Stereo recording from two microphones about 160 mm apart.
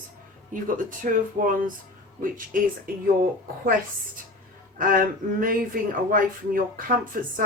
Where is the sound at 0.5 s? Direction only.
55° right (ahead or behind).